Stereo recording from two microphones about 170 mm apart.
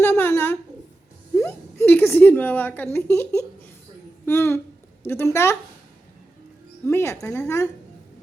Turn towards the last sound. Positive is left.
turn(degrees=15)  # may be behind; listen again after turning